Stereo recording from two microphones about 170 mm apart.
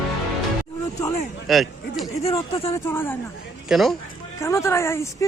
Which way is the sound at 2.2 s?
35° left (ahead or behind).